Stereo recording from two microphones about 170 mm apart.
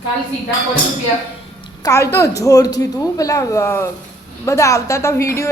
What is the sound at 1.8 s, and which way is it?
A woman's voice, 15° left (ahead or behind).